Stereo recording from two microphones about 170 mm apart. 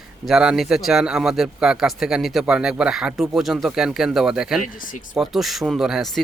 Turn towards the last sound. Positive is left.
turn(degrees=0)  # may be behind; listen again after turning